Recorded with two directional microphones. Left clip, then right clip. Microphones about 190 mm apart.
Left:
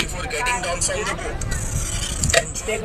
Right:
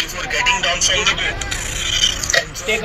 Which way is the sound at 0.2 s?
50° left (ahead or behind).